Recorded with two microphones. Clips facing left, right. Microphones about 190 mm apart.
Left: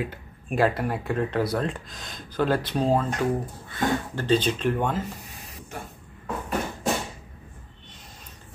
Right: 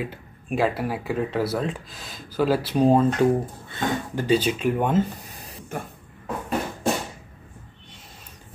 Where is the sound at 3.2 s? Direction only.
25° right (ahead or behind).